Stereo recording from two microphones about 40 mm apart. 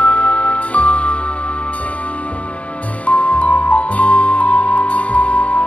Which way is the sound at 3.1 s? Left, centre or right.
Left.